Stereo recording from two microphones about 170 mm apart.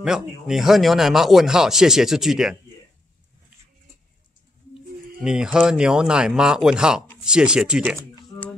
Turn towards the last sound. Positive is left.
turn(degrees=-5)  # may be behind; listen again after turning